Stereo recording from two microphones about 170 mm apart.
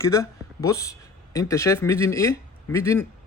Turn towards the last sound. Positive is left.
turn(degrees=15)  # may be behind; listen again after turning